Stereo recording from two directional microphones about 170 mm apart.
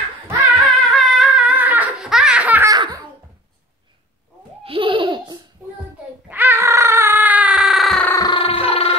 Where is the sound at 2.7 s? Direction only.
25° right (ahead or behind).